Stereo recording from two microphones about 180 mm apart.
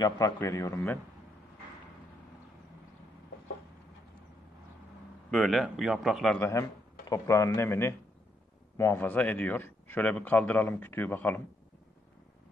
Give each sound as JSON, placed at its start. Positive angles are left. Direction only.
{"t": 0.0, "sound": "speech", "side_deg": 20}
{"t": 5.3, "sound": "a man's voice", "side_deg": 0}
{"t": 7.1, "sound": "speech", "side_deg": 15}